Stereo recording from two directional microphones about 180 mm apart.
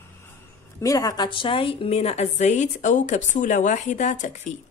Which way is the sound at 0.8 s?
20° left (ahead or behind).